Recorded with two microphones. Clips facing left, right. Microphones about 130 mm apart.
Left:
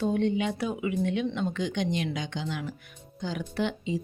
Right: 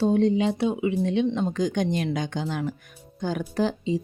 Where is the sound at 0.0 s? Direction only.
35° right (ahead or behind).